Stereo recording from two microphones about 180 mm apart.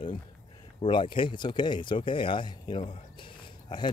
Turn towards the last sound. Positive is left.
turn(degrees=25)  # may be behind; listen again after turning